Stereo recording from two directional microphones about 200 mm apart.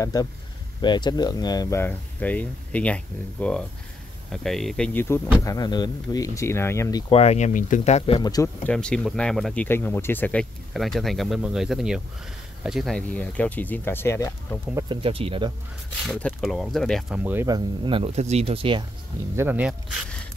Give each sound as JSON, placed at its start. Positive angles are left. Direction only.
{"t": 0.0, "sound": "speech", "side_deg": 20}
{"t": 7.2, "sound": "speech", "side_deg": 35}
{"t": 8.2, "sound": "speech", "side_deg": 20}
{"t": 8.6, "sound": "speech", "side_deg": 5}
{"t": 14.9, "sound": "speech", "side_deg": -30}
{"t": 16.2, "sound": "speech", "side_deg": 5}
{"t": 17.2, "sound": "speech", "side_deg": -10}
{"t": 19.3, "sound": "speech", "side_deg": -10}